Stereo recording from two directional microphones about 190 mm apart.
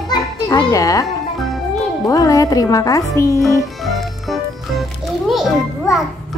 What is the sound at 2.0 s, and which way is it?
Speech, 15° left (ahead or behind).